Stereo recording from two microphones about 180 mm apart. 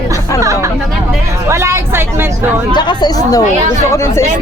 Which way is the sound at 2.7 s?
25° left (ahead or behind).